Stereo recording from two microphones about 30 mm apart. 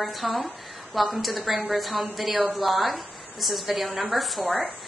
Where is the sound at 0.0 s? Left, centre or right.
Centre.